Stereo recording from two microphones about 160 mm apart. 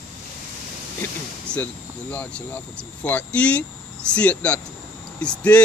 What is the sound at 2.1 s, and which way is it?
Speech, 10° left (ahead or behind).